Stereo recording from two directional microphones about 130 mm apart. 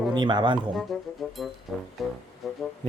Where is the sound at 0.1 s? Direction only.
35° right (ahead or behind).